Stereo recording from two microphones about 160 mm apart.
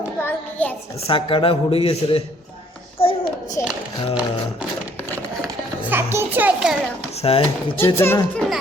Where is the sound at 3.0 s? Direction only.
35° left (ahead or behind).